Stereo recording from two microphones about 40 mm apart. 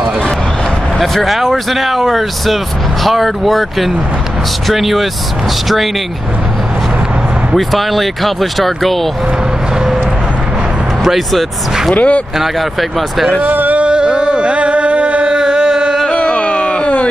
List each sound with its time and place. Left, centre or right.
0.9 s speech: centre
7.5 s speech: centre
11.1 s speech: centre
11.9 s speech: left
13.4 s speech: right
13.7 s a sound: right
16.1 s a sound: left